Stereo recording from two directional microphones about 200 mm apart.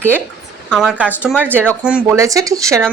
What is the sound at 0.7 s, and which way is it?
A woman's voice, centre (ahead or behind).